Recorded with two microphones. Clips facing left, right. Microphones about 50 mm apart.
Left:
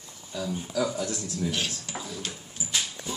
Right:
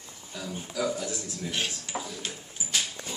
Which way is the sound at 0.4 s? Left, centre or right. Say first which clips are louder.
Left 3 dB; centre.